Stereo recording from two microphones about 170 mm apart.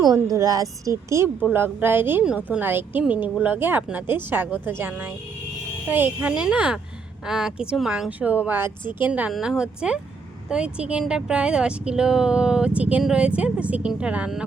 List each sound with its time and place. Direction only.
0.0 s a woman's voice: 20° right (ahead or behind); by 14.4 s 5° right (ahead or behind)